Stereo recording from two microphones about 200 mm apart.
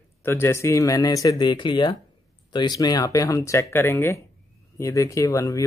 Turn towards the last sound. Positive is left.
turn(degrees=15)  # may be behind; listen again after turning